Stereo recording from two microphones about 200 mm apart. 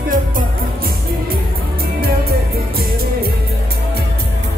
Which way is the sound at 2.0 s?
50° right (ahead or behind).